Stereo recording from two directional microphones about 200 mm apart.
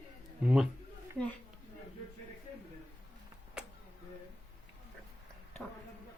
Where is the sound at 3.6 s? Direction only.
5° right (ahead or behind).